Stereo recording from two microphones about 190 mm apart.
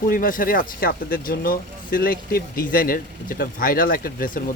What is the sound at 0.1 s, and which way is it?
Speech, 45° left (ahead or behind).